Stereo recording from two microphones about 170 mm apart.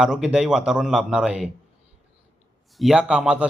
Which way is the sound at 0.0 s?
5° right (ahead or behind).